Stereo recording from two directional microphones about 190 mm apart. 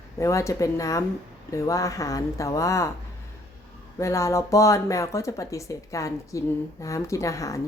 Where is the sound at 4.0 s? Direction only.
15° left (ahead or behind).